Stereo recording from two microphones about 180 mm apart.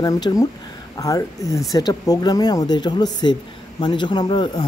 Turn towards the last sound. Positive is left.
turn(degrees=25)  # may be behind; listen again after turning